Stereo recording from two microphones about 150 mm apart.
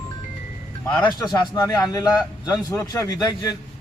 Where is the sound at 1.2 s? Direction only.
25° left (ahead or behind).